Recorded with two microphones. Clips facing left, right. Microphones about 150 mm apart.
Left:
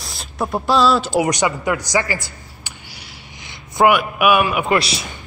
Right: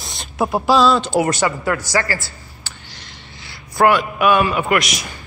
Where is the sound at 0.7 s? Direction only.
Centre (ahead or behind).